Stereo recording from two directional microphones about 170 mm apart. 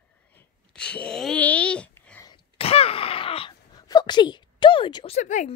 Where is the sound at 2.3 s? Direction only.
35° left (ahead or behind).